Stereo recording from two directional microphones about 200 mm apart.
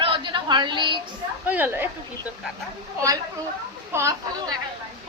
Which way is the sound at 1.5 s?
10° right (ahead or behind).